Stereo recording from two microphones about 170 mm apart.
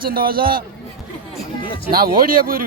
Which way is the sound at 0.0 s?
60° right (ahead or behind).